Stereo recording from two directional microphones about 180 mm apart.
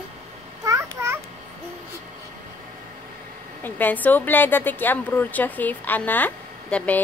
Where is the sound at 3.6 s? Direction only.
10° left (ahead or behind).